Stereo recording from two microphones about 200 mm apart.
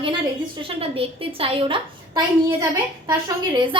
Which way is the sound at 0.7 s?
30° right (ahead or behind).